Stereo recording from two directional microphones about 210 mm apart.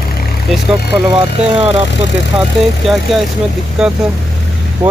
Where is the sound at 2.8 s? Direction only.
Centre (ahead or behind).